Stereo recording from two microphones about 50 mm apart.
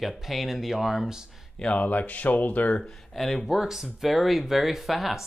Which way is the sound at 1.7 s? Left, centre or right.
Left.